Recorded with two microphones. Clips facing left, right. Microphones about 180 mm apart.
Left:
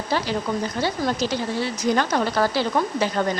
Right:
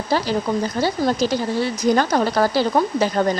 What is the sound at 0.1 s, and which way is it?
A woman's voice, 40° right (ahead or behind).